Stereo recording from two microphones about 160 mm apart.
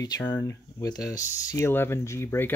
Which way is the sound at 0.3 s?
20° left (ahead or behind).